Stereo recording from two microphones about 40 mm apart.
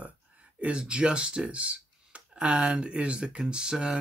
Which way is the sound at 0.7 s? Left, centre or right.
Right.